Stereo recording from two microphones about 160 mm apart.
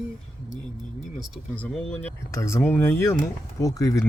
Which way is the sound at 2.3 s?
20° left (ahead or behind).